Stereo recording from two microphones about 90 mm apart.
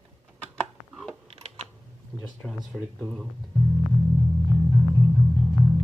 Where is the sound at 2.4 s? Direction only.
Centre (ahead or behind).